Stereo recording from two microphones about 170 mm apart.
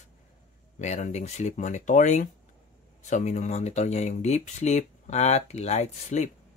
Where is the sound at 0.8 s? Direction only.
45° left (ahead or behind).